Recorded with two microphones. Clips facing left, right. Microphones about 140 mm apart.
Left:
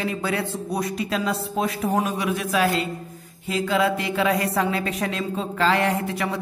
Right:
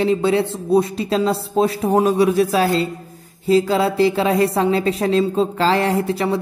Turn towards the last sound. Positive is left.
turn(degrees=-30)  # may be behind; listen again after turning